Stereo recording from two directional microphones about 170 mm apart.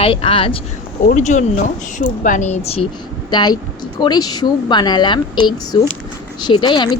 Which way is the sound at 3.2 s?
25° left (ahead or behind).